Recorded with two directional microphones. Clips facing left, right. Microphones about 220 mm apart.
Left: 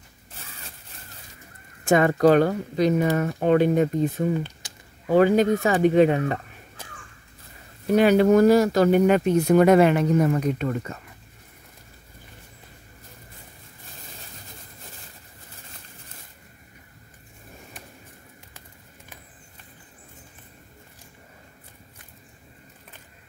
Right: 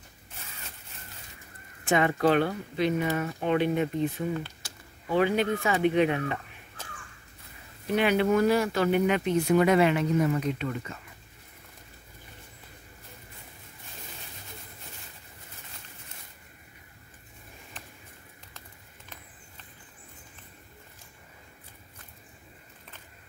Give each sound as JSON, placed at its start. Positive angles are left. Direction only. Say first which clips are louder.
{"t": 1.9, "sound": "speech", "louder": "left 6 dB", "side_deg": 45}
{"t": 7.8, "sound": "speech", "louder": "left 7 dB", "side_deg": 40}